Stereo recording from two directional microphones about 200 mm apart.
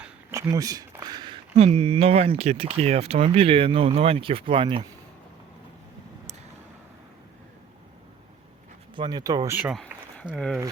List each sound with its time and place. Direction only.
0.0 s a sound: 15° right (ahead or behind); by 2.3 s 30° right (ahead or behind)
2.4 s speech: 30° right (ahead or behind)
9.0 s speech: 20° right (ahead or behind)
9.6 s speech: 5° right (ahead or behind)